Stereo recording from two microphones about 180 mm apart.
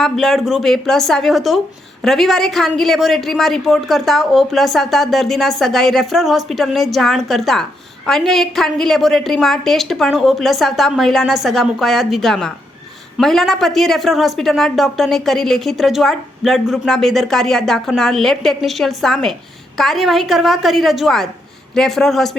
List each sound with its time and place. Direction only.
0.0 s speech: centre (ahead or behind)